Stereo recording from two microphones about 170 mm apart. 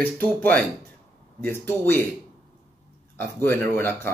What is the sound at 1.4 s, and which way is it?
Speech, 15° left (ahead or behind).